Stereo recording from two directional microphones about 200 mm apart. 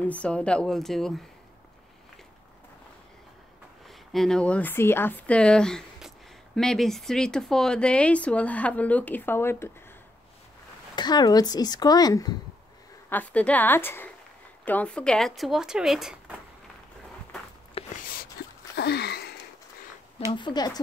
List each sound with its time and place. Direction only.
0.0 s speech: 5° left (ahead or behind)
4.1 s speech: centre (ahead or behind)
11.0 s speech: 20° left (ahead or behind)
13.1 s a woman's voice: 5° left (ahead or behind)
17.9 s a sound: 45° left (ahead or behind)
18.8 s a sound: 55° left (ahead or behind)
20.2 s speech: 20° left (ahead or behind)